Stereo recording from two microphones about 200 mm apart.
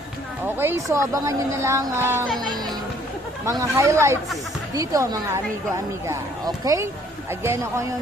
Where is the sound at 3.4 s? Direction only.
15° right (ahead or behind).